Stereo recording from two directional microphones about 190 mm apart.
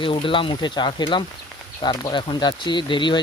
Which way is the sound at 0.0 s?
25° left (ahead or behind).